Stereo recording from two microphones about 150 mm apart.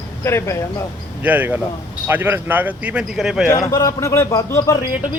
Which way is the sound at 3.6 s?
20° left (ahead or behind).